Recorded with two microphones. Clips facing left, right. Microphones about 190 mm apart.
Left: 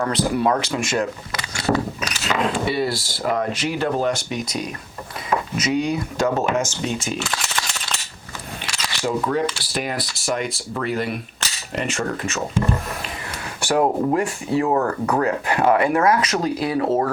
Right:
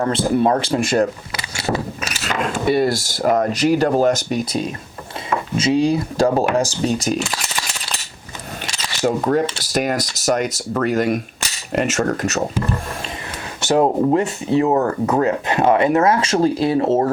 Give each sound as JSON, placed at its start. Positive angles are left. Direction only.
{"t": 0.0, "sound": "speech", "side_deg": -30}
{"t": 2.3, "sound": "speech", "side_deg": -45}
{"t": 7.3, "sound": "a sound", "side_deg": -10}
{"t": 8.6, "sound": "speech", "side_deg": -45}
{"t": 13.6, "sound": "speech", "side_deg": -20}